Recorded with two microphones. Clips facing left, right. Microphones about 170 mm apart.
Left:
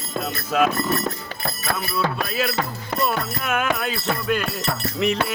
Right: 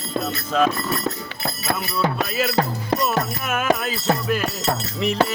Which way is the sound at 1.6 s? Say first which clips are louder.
Right 1 dB; 20° right (ahead or behind).